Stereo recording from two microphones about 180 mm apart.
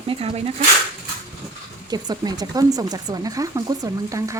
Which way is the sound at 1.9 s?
20° right (ahead or behind).